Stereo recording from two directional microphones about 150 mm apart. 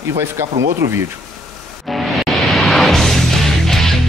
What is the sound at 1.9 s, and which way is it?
Music, centre (ahead or behind).